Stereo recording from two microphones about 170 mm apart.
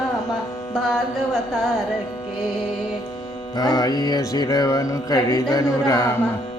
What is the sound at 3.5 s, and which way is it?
Music, 20° left (ahead or behind).